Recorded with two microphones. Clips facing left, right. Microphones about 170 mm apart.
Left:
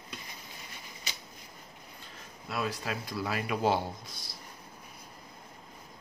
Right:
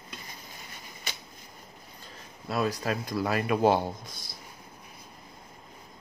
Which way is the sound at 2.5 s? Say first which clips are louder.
Right 5 dB; 40° right (ahead or behind).